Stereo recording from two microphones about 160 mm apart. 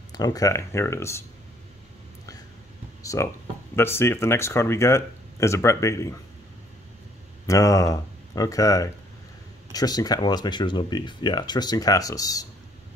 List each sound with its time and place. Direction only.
0.1 s speech: 25° left (ahead or behind)
3.0 s a sound: 20° left (ahead or behind)
3.7 s speech: 15° left (ahead or behind)
7.4 s speech: 20° left (ahead or behind)